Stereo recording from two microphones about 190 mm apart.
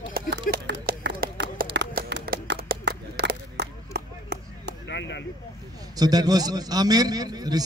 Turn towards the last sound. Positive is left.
turn(degrees=-20)  # may be behind; listen again after turning